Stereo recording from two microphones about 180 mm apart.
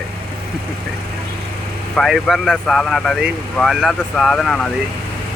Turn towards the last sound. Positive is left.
turn(degrees=0)  # may be behind; listen again after turning